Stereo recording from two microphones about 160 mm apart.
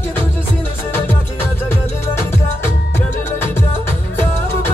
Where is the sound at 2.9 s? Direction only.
15° left (ahead or behind).